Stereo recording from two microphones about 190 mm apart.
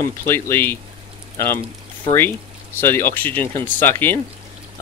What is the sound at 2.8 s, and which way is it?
Speech, 10° left (ahead or behind).